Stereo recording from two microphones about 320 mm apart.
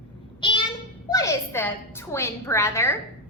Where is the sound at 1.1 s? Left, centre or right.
Centre.